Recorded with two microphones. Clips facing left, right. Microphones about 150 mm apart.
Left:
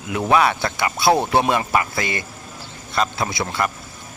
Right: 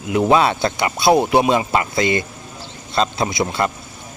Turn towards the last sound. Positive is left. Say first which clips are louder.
# right 3 dB
turn(degrees=-20)  # may be behind; listen again after turning